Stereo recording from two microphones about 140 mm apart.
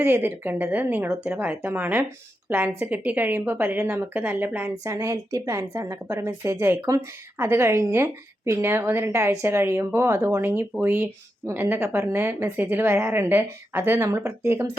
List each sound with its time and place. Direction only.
0.0 s a woman's voice: 15° right (ahead or behind)